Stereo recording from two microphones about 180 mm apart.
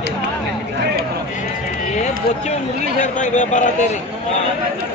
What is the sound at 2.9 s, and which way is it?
Speech, 45° left (ahead or behind).